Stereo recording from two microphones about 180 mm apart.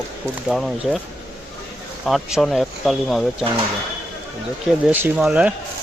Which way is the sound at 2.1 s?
Centre (ahead or behind).